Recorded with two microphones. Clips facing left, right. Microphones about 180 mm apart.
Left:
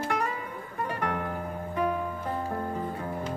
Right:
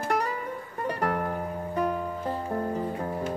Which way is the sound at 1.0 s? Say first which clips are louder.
Right 4 dB; 45° right (ahead or behind).